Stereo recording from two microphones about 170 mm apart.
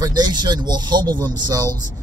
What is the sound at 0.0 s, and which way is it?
Speech, 25° right (ahead or behind).